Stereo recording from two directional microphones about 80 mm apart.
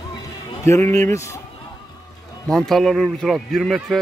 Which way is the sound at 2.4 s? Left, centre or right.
Centre.